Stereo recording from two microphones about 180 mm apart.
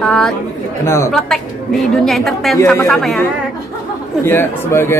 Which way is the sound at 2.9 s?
Centre (ahead or behind).